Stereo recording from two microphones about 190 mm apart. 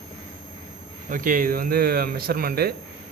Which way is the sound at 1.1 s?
45° right (ahead or behind).